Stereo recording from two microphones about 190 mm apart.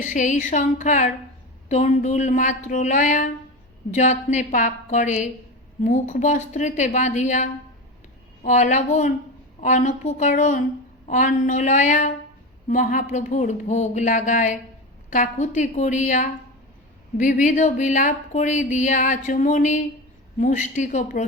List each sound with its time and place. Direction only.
0.0 s speech: 40° left (ahead or behind)